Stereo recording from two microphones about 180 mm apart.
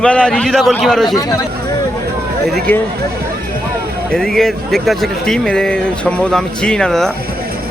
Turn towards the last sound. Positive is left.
turn(degrees=5)  # may be behind; listen again after turning